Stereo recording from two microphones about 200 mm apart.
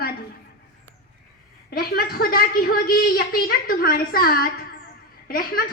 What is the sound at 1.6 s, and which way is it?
A woman's voice, 50° left (ahead or behind).